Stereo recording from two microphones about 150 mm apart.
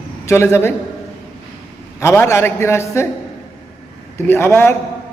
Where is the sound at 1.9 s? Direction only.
20° left (ahead or behind).